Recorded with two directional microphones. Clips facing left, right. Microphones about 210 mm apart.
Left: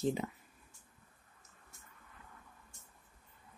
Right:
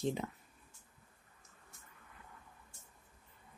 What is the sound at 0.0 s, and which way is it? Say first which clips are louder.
Speech: left 2 dB; centre (ahead or behind).